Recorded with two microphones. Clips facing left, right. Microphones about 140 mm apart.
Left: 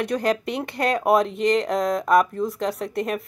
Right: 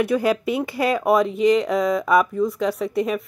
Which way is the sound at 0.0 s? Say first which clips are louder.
Right 3 dB; 5° right (ahead or behind).